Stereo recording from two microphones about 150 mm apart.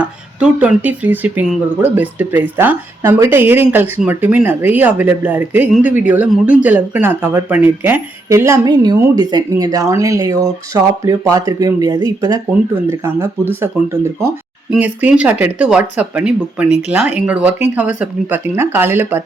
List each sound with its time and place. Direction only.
0.0 s speech: 10° right (ahead or behind)
14.7 s speech: 10° right (ahead or behind)